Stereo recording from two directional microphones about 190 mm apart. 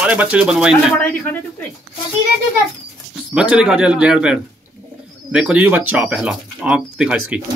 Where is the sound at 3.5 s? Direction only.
5° right (ahead or behind).